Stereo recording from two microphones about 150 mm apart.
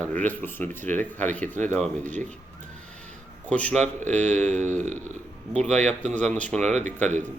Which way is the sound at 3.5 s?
10° left (ahead or behind).